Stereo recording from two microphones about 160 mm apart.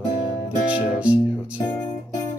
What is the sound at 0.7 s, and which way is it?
Music, 10° right (ahead or behind).